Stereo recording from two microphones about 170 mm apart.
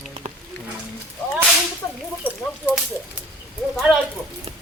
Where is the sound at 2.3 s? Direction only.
10° left (ahead or behind).